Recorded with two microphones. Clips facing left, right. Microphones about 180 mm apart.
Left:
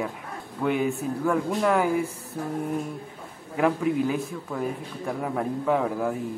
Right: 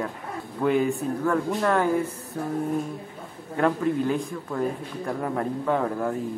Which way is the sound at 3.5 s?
10° left (ahead or behind).